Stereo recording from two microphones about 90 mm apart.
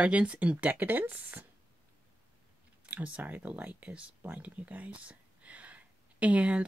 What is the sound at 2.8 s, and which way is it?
Speech, 15° right (ahead or behind).